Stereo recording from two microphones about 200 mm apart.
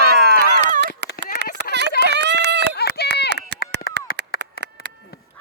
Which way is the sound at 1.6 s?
60° right (ahead or behind).